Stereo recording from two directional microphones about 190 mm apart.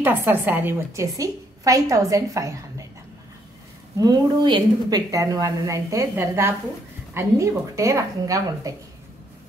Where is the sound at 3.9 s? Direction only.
20° right (ahead or behind).